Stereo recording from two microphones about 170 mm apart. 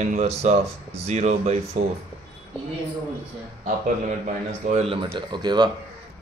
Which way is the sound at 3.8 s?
45° right (ahead or behind).